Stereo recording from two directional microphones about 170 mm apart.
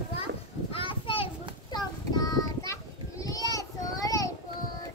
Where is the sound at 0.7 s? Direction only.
30° left (ahead or behind).